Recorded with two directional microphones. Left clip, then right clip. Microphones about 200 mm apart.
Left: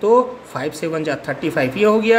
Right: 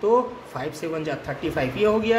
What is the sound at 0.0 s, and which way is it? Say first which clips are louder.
Speech: left 6 dB; 30° left (ahead or behind).